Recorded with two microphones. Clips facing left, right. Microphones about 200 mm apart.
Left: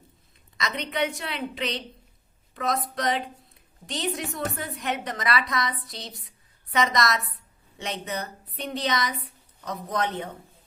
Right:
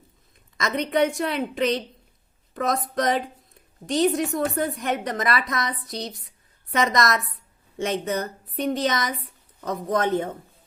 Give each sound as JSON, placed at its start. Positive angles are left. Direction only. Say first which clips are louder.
{"t": 0.5, "sound": "a woman's voice", "louder": "right 7 dB", "side_deg": -45}